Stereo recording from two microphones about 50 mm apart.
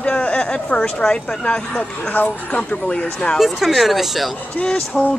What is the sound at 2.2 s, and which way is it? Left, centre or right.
Speech, left.